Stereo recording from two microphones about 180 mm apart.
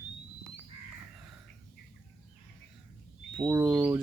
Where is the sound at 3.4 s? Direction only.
15° right (ahead or behind).